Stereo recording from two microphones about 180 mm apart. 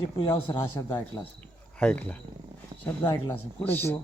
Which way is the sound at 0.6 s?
20° left (ahead or behind).